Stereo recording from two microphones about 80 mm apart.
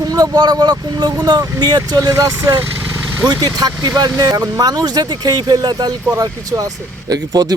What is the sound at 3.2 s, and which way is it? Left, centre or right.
Speech, right.